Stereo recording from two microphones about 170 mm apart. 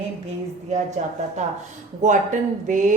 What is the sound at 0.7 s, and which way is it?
Speech, 45° right (ahead or behind).